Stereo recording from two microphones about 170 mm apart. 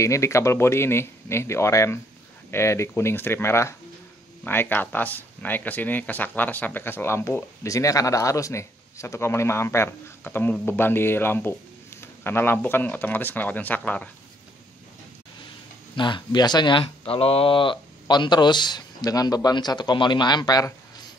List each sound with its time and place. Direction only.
0.0 s speech: 15° left (ahead or behind)
16.0 s speech: 25° left (ahead or behind)